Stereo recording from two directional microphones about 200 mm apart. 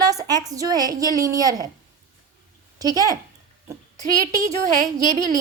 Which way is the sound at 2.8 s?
20° right (ahead or behind).